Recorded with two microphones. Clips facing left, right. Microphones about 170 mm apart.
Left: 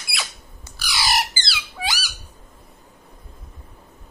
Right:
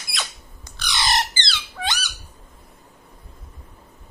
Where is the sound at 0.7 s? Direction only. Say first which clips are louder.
Even; 5° left (ahead or behind).